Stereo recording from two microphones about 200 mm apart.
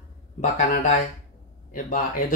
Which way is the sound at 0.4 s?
40° left (ahead or behind).